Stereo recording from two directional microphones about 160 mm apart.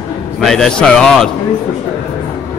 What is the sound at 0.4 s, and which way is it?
Speech, 5° left (ahead or behind).